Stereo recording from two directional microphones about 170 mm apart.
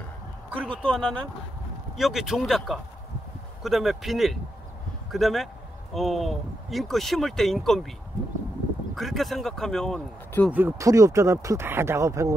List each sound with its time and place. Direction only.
0.8 s speech: 5° left (ahead or behind)
8.9 s speech: centre (ahead or behind)
10.5 s speech: 15° right (ahead or behind)